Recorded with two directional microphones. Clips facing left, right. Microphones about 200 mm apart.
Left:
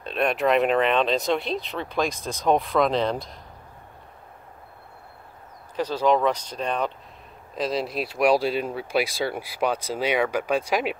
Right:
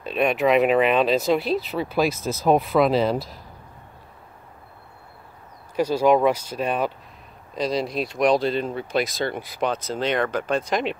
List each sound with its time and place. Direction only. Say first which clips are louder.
0.0 s speech: right 2 dB; centre (ahead or behind)
5.8 s speech: right 3 dB; 10° right (ahead or behind)
7.5 s speech: right 2 dB; 5° left (ahead or behind)